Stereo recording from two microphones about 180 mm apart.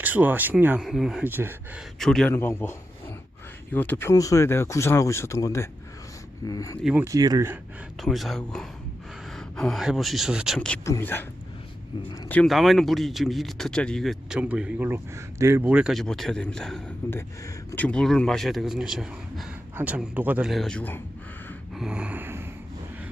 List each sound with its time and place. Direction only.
0.0 s speech: 10° right (ahead or behind)
2.0 s speech: 5° left (ahead or behind)
2.3 s speech: 15° left (ahead or behind)
6.8 s speech: 10° right (ahead or behind)
8.0 s speech: centre (ahead or behind)
12.3 s speech: 5° left (ahead or behind)
21.8 s a sound: 5° right (ahead or behind)